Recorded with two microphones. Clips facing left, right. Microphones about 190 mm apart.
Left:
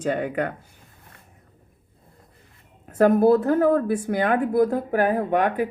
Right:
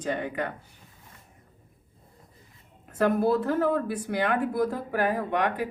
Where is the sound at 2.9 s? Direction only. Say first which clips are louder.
Left 7 dB; 50° left (ahead or behind).